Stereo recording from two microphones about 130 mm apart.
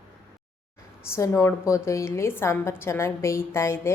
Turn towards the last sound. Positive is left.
turn(degrees=20)  # may be behind; listen again after turning